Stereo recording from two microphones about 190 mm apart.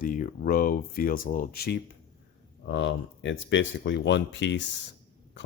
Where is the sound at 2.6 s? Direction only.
75° left (ahead or behind).